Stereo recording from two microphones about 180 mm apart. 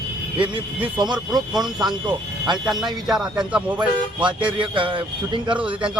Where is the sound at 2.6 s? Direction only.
5° right (ahead or behind).